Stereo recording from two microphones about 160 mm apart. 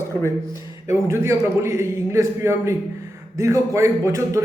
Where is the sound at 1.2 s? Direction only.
15° right (ahead or behind).